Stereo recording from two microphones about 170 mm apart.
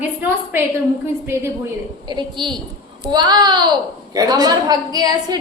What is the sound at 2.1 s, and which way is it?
A woman's voice, 25° right (ahead or behind).